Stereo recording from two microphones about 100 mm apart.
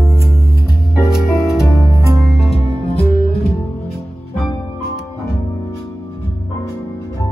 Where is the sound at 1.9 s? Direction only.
35° right (ahead or behind).